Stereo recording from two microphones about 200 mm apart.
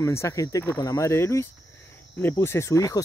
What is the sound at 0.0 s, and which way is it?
Speech, 15° left (ahead or behind).